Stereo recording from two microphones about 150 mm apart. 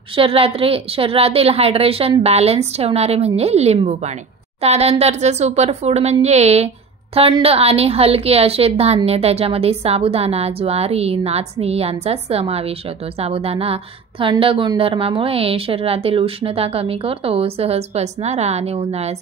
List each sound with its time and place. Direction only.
0.1 s a woman's voice: 40° right (ahead or behind)